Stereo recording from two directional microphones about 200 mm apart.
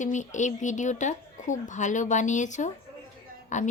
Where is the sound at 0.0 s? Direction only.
35° left (ahead or behind).